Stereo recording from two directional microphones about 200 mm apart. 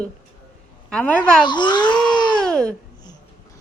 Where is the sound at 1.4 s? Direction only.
20° left (ahead or behind).